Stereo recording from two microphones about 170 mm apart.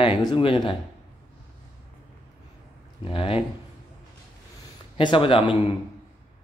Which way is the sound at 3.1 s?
35° left (ahead or behind).